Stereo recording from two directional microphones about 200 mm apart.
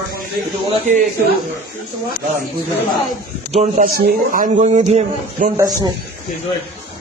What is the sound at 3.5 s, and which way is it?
Speech, 35° right (ahead or behind).